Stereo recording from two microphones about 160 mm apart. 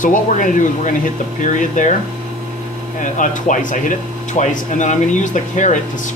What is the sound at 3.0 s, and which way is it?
Speech, 55° left (ahead or behind).